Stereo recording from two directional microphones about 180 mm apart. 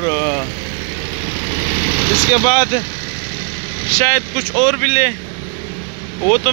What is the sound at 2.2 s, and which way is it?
Speech, 25° left (ahead or behind).